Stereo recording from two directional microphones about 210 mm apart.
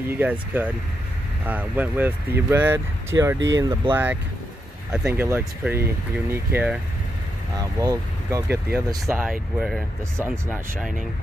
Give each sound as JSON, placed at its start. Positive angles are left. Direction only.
{"t": 0.1, "sound": "speech", "side_deg": -10}
{"t": 3.3, "sound": "speech", "side_deg": -60}
{"t": 3.9, "sound": "speech", "side_deg": -10}
{"t": 7.8, "sound": "speech", "side_deg": -15}